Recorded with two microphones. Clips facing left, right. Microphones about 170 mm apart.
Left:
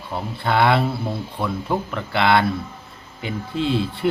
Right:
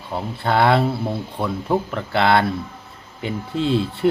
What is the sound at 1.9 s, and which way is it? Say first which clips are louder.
Speech: left 1 dB; 35° right (ahead or behind).